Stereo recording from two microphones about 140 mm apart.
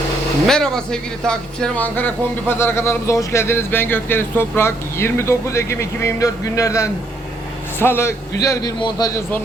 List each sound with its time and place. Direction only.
0.4 s a man's voice: 5° left (ahead or behind); by 9.2 s 25° left (ahead or behind)